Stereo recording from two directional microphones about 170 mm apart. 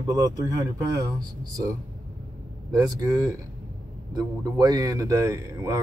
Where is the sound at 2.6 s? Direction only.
20° right (ahead or behind).